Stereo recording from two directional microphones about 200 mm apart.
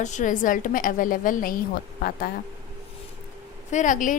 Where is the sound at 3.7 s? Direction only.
40° left (ahead or behind).